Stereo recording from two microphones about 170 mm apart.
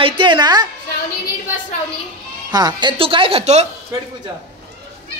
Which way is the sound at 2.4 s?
25° right (ahead or behind).